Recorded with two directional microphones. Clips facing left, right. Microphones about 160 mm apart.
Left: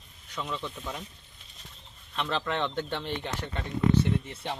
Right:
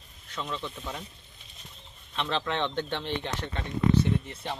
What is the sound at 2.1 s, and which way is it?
Speech, 5° left (ahead or behind).